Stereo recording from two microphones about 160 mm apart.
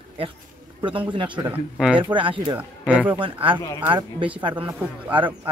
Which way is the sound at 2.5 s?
10° right (ahead or behind).